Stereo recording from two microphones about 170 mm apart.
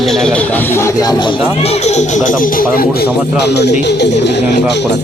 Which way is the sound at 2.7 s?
65° left (ahead or behind).